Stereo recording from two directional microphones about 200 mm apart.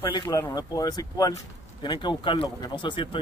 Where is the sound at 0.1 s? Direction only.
15° left (ahead or behind).